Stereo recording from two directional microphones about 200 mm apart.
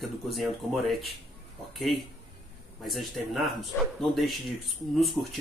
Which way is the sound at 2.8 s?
Centre (ahead or behind).